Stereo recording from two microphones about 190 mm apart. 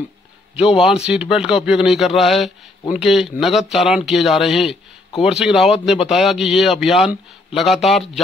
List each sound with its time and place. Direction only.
0.8 s speech: 5° right (ahead or behind)